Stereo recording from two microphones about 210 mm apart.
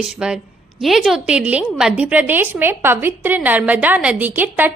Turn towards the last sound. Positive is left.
turn(degrees=-10)  # may be behind; listen again after turning